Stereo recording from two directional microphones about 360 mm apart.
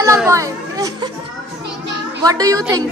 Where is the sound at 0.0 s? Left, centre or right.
Centre.